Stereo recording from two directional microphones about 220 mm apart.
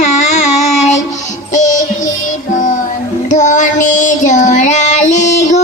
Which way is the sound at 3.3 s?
35° left (ahead or behind).